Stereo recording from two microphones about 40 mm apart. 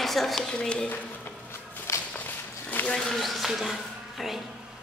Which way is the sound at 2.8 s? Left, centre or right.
Left.